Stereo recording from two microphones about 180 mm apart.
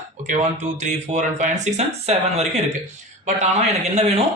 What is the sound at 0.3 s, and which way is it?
Speech, 40° right (ahead or behind).